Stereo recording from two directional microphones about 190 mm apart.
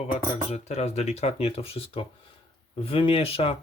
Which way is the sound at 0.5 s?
35° left (ahead or behind).